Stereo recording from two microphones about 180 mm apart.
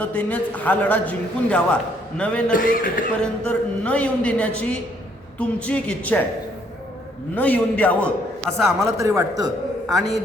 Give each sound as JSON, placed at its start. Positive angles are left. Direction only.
{"t": 0.0, "sound": "a man's voice", "side_deg": 10}
{"t": 2.5, "sound": "a man's voice", "side_deg": 50}
{"t": 3.2, "sound": "a man's voice", "side_deg": 5}
{"t": 7.3, "sound": "a man's voice", "side_deg": 10}
{"t": 8.6, "sound": "a man's voice", "side_deg": -15}
{"t": 9.8, "sound": "a man's voice", "side_deg": 0}